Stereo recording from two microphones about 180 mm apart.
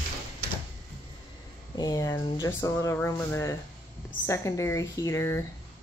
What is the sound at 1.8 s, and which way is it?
Speech, 20° left (ahead or behind).